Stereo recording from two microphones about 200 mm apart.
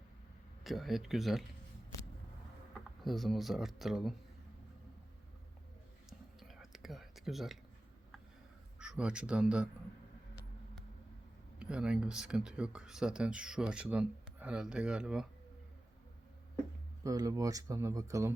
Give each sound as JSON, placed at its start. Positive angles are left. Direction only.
{"t": 0.6, "sound": "speech", "side_deg": 0}
{"t": 3.0, "sound": "speech", "side_deg": 0}
{"t": 6.1, "sound": "whispering", "side_deg": 0}
{"t": 8.8, "sound": "speech", "side_deg": -5}
{"t": 11.6, "sound": "speech", "side_deg": -5}
{"t": 17.0, "sound": "speech", "side_deg": -15}